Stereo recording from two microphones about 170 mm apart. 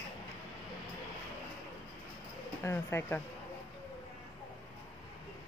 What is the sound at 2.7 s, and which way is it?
Speech, 15° left (ahead or behind).